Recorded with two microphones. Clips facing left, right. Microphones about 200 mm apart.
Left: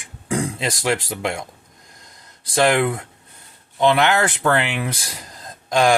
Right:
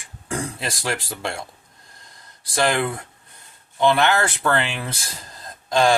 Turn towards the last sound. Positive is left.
turn(degrees=15)  # may be behind; listen again after turning